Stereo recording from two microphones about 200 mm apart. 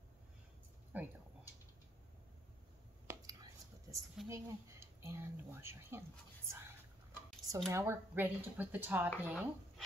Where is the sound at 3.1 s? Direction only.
20° right (ahead or behind).